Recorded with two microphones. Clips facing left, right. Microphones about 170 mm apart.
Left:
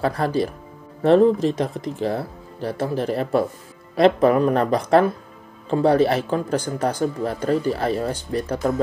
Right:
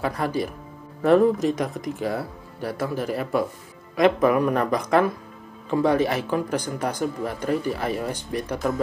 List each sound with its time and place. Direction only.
0.0 s speech: 30° left (ahead or behind)